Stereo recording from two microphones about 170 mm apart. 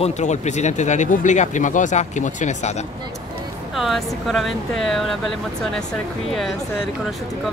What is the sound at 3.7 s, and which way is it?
Speech, centre (ahead or behind).